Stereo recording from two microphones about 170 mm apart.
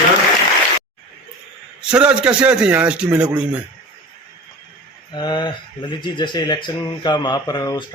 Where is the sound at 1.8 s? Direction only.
5° right (ahead or behind).